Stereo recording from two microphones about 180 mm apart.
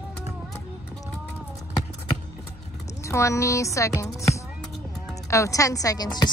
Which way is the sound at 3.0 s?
15° left (ahead or behind).